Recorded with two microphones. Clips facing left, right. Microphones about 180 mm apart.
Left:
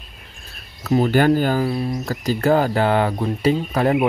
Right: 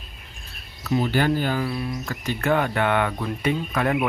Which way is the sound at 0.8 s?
40° left (ahead or behind).